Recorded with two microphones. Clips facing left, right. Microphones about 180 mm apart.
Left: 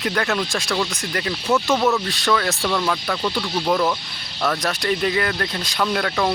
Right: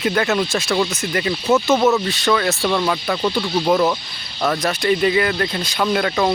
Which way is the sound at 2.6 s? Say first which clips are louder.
Right 3 dB; 15° right (ahead or behind).